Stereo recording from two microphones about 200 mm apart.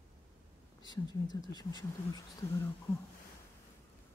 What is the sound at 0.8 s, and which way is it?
Speech, 20° left (ahead or behind).